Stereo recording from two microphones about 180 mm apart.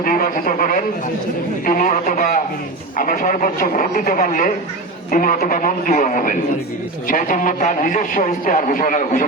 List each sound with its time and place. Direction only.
0.0 s a man's voice: 50° left (ahead or behind)